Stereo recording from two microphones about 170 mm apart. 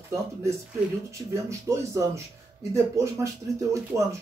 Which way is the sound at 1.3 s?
15° right (ahead or behind).